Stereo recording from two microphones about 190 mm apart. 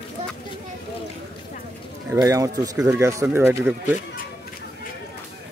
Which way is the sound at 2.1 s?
15° right (ahead or behind).